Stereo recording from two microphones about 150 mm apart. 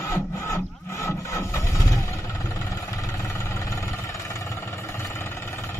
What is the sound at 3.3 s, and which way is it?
Vehicle, 20° left (ahead or behind).